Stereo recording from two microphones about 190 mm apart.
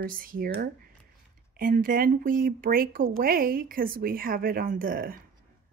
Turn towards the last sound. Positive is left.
turn(degrees=-50)  # may be behind; listen again after turning